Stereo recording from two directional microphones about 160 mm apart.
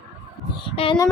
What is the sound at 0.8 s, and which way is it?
Speech, 35° left (ahead or behind).